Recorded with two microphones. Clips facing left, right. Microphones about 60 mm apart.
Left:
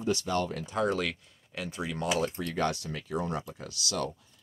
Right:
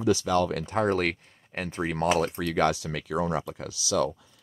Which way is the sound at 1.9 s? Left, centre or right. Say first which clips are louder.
Right 5 dB; right.